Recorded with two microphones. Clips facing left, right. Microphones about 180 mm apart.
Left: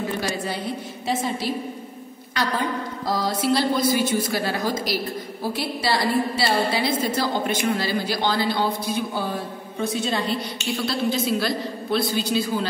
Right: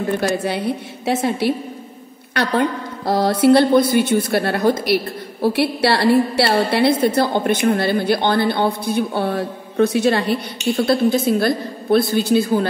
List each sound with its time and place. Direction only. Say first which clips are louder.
0.2 s speech: right 7 dB; 65° right (ahead or behind)
3.1 s a woman's voice: right 9 dB; 60° right (ahead or behind)